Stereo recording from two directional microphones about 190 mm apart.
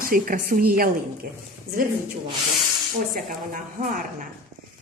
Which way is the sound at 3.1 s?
45° right (ahead or behind).